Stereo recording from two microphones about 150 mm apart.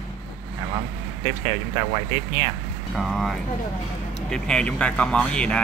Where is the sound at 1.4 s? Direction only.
25° right (ahead or behind).